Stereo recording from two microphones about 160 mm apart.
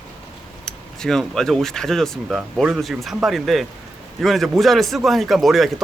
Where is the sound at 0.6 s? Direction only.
5° left (ahead or behind).